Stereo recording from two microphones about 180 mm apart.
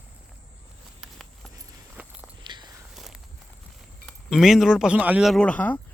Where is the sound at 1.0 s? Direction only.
Centre (ahead or behind).